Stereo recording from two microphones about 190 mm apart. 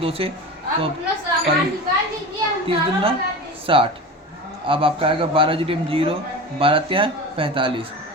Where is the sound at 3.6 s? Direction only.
30° right (ahead or behind).